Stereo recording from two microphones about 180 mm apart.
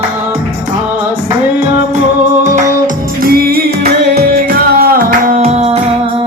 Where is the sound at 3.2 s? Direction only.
55° right (ahead or behind).